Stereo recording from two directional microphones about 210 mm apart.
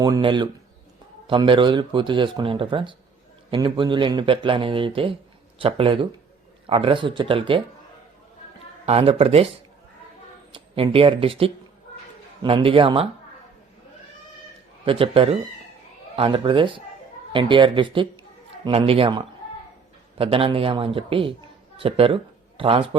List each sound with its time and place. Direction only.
0.0 s speech: 20° right (ahead or behind)
8.9 s speech: 30° right (ahead or behind)
10.5 s speech: 25° right (ahead or behind)
14.8 s speech: 25° right (ahead or behind)